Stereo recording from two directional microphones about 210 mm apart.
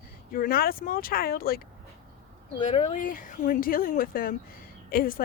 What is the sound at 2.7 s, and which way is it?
A woman's voice, 35° left (ahead or behind).